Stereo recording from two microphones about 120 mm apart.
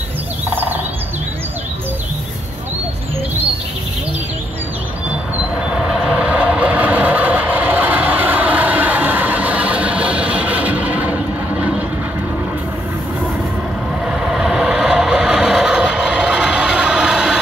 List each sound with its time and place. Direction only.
0.5 s music: 15° right (ahead or behind)
5.7 s vehicle: 5° right (ahead or behind)
14.0 s vehicle: 5° right (ahead or behind)